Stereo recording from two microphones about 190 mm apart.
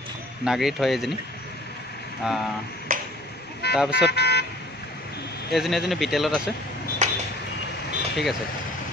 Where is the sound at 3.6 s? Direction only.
60° left (ahead or behind).